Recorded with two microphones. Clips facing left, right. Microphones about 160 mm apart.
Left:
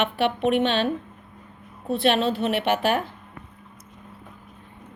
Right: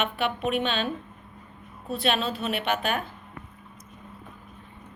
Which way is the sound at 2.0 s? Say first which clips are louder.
Left 5 dB; 65° left (ahead or behind).